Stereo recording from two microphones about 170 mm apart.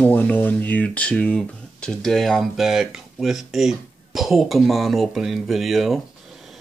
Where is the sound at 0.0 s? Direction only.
10° left (ahead or behind).